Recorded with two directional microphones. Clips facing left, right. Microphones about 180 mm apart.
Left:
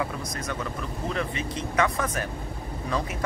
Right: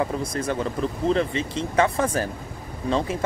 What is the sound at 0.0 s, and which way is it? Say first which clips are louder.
Speech: right 6 dB; 30° right (ahead or behind).